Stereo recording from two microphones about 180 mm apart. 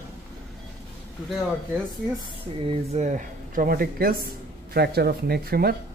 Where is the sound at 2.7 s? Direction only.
40° right (ahead or behind); by 5.8 s 60° right (ahead or behind).